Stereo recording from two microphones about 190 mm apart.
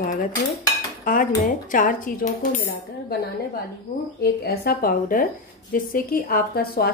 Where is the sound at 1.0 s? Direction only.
45° left (ahead or behind).